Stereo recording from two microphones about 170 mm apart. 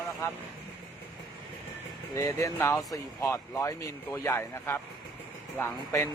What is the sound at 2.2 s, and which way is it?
Speech, 20° left (ahead or behind).